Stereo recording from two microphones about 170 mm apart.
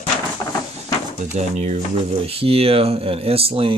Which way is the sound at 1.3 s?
40° right (ahead or behind).